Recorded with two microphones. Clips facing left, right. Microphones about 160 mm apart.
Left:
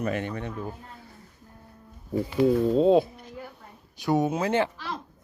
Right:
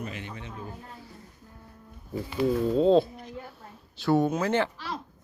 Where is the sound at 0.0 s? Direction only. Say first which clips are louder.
Left 9 dB; 55° left (ahead or behind).